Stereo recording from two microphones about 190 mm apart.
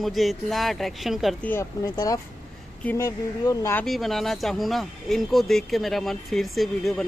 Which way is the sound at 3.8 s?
Centre (ahead or behind).